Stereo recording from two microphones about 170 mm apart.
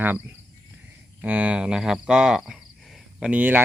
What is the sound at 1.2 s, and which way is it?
Cricket, 10° right (ahead or behind).